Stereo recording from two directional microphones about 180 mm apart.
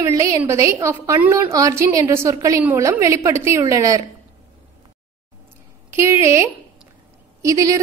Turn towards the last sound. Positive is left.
turn(degrees=-20)  # may be behind; listen again after turning